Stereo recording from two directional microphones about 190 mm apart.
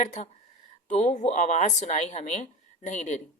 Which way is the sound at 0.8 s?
40° left (ahead or behind).